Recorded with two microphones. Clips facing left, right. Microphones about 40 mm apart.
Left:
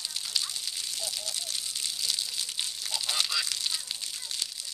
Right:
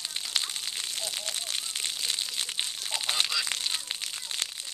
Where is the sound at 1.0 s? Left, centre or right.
Right.